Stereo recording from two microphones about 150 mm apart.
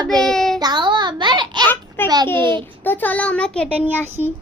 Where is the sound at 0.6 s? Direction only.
30° right (ahead or behind).